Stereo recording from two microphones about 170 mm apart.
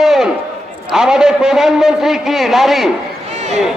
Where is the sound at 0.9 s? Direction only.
5° right (ahead or behind).